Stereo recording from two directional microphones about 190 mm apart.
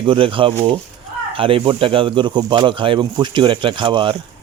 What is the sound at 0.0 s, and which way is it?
Speech, 25° right (ahead or behind).